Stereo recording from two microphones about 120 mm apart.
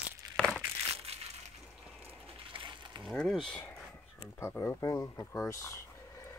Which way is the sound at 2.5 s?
45° right (ahead or behind).